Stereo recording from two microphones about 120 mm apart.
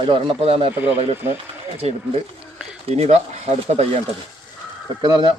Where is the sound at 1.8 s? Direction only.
60° right (ahead or behind).